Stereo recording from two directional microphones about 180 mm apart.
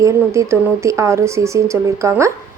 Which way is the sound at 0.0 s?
15° right (ahead or behind).